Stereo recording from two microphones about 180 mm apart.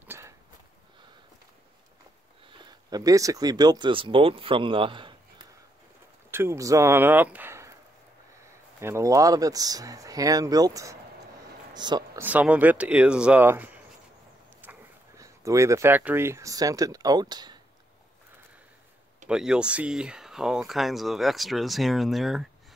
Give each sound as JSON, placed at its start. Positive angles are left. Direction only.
{"t": 0.0, "sound": "a sound", "side_deg": -10}
{"t": 2.6, "sound": "speech", "side_deg": -20}
{"t": 6.3, "sound": "speech", "side_deg": -15}
{"t": 8.8, "sound": "speech", "side_deg": -15}
{"t": 11.7, "sound": "a sound", "side_deg": -25}
{"t": 12.2, "sound": "speech", "side_deg": -10}
{"t": 19.2, "sound": "speech", "side_deg": -5}